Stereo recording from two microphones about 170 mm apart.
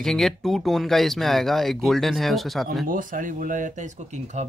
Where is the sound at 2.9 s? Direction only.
50° right (ahead or behind).